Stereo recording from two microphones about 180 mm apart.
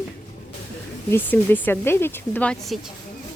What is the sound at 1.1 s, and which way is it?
Speech, 10° left (ahead or behind).